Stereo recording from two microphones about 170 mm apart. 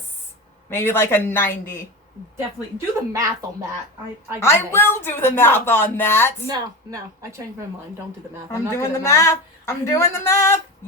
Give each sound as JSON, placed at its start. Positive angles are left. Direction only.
{"t": 0.7, "sound": "a woman's voice", "side_deg": 15}
{"t": 3.1, "sound": "a woman's voice", "side_deg": -20}
{"t": 4.4, "sound": "a woman's voice", "side_deg": 15}
{"t": 6.5, "sound": "a woman's voice", "side_deg": -20}
{"t": 8.4, "sound": "a woman's voice", "side_deg": 15}